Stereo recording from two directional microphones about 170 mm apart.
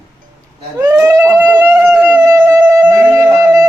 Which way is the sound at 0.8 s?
15° right (ahead or behind).